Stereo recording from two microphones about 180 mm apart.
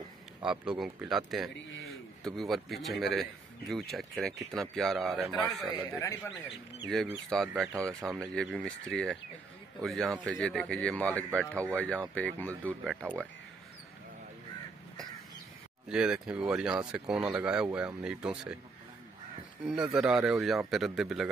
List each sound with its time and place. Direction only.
0.5 s speech: 5° right (ahead or behind)
5.9 s speech: 15° left (ahead or behind)
6.9 s speech: centre (ahead or behind)
15.9 s speech: 5° right (ahead or behind)
19.6 s speech: 5° right (ahead or behind)